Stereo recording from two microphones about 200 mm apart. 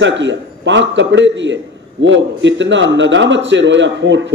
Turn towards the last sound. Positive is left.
turn(degrees=-65)  # may be behind; listen again after turning